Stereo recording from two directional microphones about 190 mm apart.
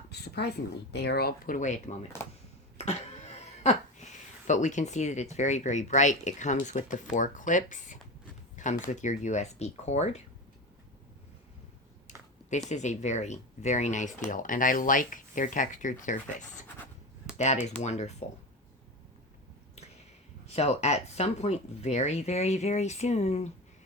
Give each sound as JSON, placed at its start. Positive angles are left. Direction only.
{"t": 0.1, "sound": "speech", "side_deg": 60}
{"t": 2.2, "sound": "speech", "side_deg": 15}
{"t": 2.7, "sound": "speech", "side_deg": 35}
{"t": 12.0, "sound": "speech", "side_deg": 40}
{"t": 17.3, "sound": "speech", "side_deg": 35}
{"t": 20.5, "sound": "speech", "side_deg": 35}